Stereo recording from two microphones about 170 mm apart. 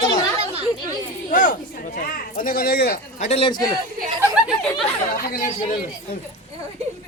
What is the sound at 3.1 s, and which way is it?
Speech, 40° left (ahead or behind).